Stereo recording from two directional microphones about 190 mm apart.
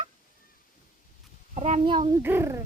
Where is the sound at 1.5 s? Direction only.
35° right (ahead or behind).